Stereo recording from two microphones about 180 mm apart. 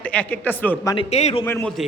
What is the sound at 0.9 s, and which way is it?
Speech, 35° left (ahead or behind).